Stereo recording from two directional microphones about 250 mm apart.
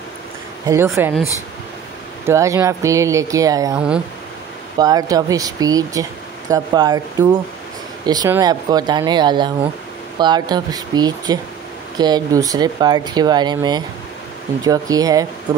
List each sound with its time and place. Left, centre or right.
0.7 s speech: centre
1.1 s speech: centre
2.2 s speech: centre